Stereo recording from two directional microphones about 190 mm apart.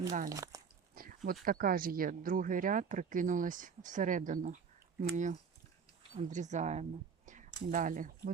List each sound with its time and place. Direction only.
0.3 s speech: 20° right (ahead or behind)
0.9 s speech: 50° right (ahead or behind)